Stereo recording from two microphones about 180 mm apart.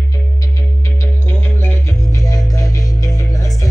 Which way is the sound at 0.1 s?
20° left (ahead or behind).